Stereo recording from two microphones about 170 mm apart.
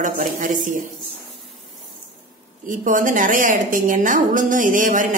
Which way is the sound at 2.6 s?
50° right (ahead or behind).